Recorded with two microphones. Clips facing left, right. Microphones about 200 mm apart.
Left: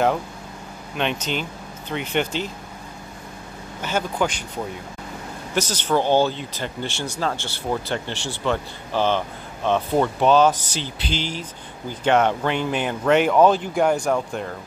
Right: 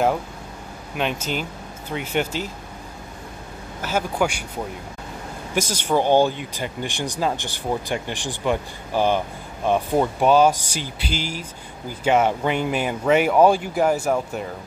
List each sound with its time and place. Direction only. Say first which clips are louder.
0.9 s speech: even; 5° right (ahead or behind)
3.8 s speech: right 1 dB; 10° right (ahead or behind)
5.5 s speech: even; 10° right (ahead or behind)